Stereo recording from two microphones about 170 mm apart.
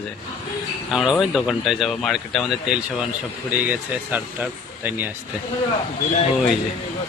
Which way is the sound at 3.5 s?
10° right (ahead or behind).